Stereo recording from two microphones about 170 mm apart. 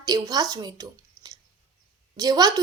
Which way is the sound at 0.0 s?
20° right (ahead or behind).